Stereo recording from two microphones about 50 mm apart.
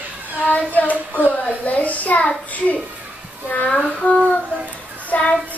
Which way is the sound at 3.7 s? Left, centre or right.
Centre.